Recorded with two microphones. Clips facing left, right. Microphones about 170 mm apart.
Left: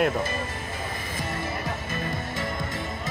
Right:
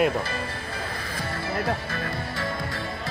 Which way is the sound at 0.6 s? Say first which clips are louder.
Even; 20° left (ahead or behind).